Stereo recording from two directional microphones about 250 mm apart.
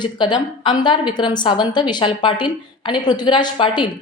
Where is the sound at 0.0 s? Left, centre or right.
Centre.